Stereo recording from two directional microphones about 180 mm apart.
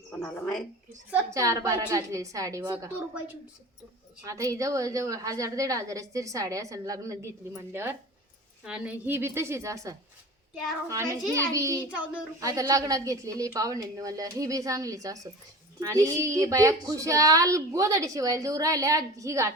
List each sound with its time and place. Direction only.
0.1 s a woman's voice: 5° left (ahead or behind)
1.1 s a woman's voice: 20° right (ahead or behind)
4.2 s a woman's voice: 20° right (ahead or behind)